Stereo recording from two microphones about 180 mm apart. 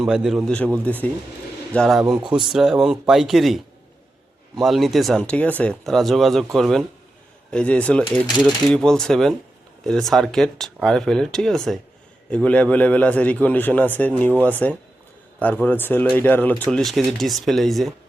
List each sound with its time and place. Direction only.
0.0 s a man's voice: 5° right (ahead or behind)